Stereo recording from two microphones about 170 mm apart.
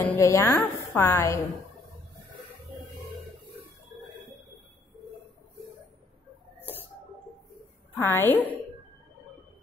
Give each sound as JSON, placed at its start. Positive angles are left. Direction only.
{"t": 0.0, "sound": "a woman's voice", "side_deg": 15}
{"t": 7.9, "sound": "a woman's voice", "side_deg": 15}